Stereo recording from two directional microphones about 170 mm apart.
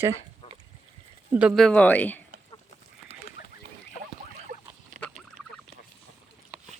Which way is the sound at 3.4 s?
90° left.